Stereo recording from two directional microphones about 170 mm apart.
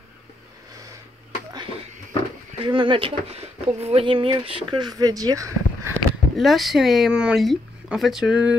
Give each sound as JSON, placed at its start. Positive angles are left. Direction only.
{"t": 1.5, "sound": "a sound", "side_deg": -25}
{"t": 2.6, "sound": "speech", "side_deg": -30}
{"t": 6.3, "sound": "speech", "side_deg": 0}